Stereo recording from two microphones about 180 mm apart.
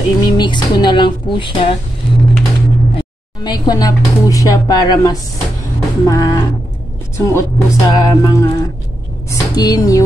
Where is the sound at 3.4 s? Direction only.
20° left (ahead or behind).